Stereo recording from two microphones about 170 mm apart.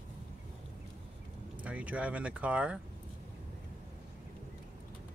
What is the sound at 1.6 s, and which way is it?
Speech, 10° right (ahead or behind).